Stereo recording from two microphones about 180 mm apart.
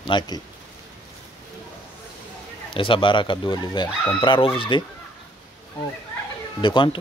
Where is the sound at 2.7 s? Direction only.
30° left (ahead or behind).